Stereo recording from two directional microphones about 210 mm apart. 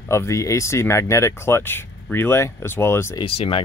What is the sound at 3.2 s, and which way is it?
Speech, 25° left (ahead or behind).